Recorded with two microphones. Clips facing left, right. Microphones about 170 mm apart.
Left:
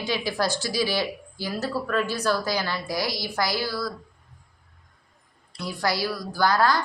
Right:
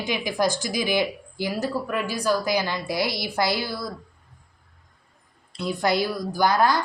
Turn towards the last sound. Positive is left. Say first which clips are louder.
# right 1 dB
turn(degrees=-20)  # may be behind; listen again after turning